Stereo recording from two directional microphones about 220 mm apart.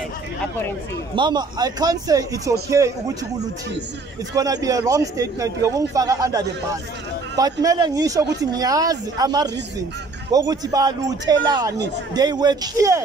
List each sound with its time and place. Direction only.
1.1 s speech: 20° right (ahead or behind)
4.3 s speech: 15° right (ahead or behind)